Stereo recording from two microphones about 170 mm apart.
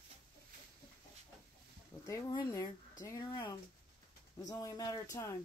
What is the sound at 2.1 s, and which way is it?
Speech, 20° left (ahead or behind).